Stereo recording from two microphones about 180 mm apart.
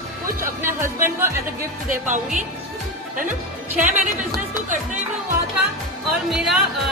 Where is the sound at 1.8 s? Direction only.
45° right (ahead or behind).